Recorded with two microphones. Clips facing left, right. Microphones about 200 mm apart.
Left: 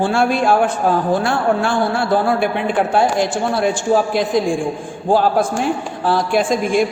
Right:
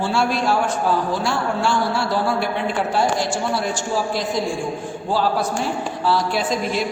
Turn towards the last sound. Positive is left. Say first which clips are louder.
# left 6 dB
turn(degrees=50)  # may be behind; listen again after turning